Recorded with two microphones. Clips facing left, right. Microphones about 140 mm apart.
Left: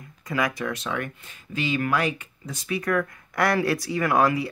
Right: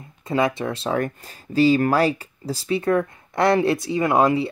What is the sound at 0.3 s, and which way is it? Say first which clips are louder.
Speech: right 5 dB; 25° right (ahead or behind).